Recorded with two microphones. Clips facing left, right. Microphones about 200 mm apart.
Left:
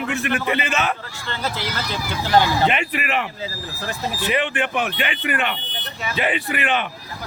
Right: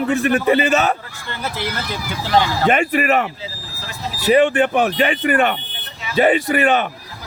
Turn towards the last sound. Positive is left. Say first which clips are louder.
# right 7 dB
turn(degrees=-40)  # may be behind; listen again after turning